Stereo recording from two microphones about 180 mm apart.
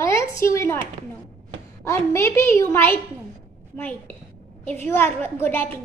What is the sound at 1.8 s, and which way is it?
A woman's voice, 15° left (ahead or behind).